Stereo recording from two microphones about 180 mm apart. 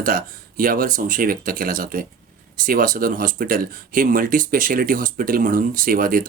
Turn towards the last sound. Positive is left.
turn(degrees=-50)  # may be behind; listen again after turning